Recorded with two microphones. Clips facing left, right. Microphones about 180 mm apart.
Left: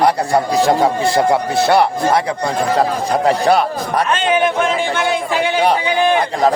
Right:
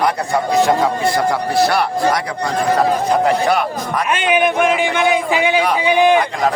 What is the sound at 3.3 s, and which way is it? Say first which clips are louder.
Speech: left 2 dB; 35° left (ahead or behind).